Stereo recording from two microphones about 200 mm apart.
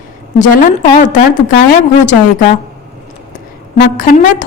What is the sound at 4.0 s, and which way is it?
Speech, 40° left (ahead or behind).